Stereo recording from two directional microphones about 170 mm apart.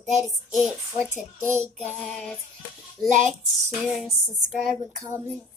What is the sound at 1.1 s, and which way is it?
Speech, 15° right (ahead or behind).